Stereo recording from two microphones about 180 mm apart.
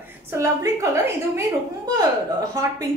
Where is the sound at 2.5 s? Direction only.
20° right (ahead or behind).